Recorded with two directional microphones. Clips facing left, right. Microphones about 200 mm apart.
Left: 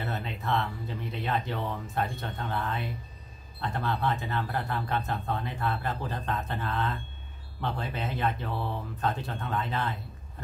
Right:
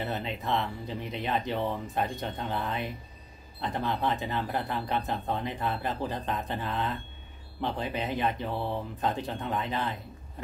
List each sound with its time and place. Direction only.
0.0 s speech: 20° right (ahead or behind)